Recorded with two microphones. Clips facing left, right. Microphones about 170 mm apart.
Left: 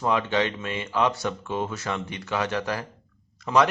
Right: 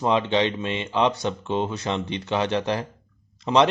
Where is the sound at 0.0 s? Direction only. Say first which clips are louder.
Right 3 dB; 20° right (ahead or behind).